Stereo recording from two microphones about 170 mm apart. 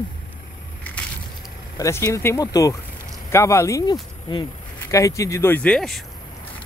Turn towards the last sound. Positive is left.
turn(degrees=5)  # may be behind; listen again after turning